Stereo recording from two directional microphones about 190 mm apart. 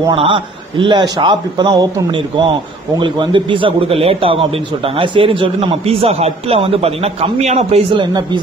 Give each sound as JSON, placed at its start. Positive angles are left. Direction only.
{"t": 0.0, "sound": "a man's voice", "side_deg": -25}